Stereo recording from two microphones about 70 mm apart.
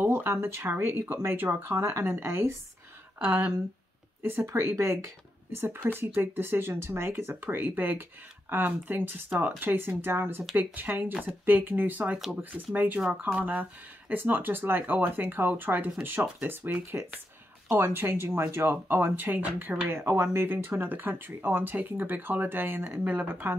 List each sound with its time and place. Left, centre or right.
0.0 s speech: right
4.5 s speech: right
17.6 s speech: right
19.9 s speech: right